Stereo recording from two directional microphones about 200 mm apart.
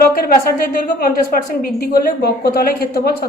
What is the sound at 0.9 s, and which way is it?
A woman's voice, 45° left (ahead or behind).